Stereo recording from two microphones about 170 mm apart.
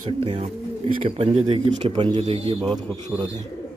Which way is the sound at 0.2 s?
35° right (ahead or behind).